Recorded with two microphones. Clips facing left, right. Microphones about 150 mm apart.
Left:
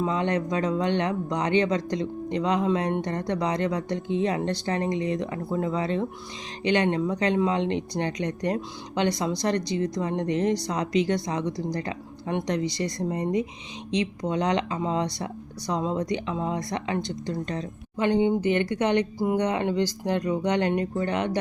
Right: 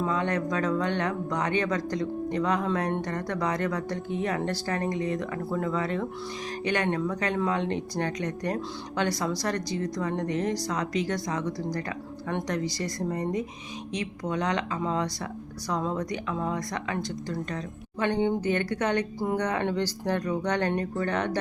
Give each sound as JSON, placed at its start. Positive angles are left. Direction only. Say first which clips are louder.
{"t": 0.0, "sound": "speech", "louder": "left 2 dB", "side_deg": 25}